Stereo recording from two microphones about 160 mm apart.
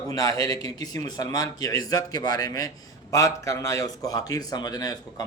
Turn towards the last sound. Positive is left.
turn(degrees=20)  # may be behind; listen again after turning